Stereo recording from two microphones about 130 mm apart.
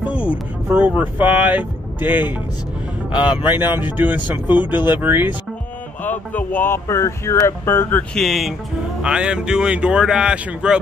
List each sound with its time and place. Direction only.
0.0 s vehicle: 10° right (ahead or behind)
0.7 s speech: 15° right (ahead or behind)
6.0 s speech: 15° left (ahead or behind)
8.1 s speech: centre (ahead or behind)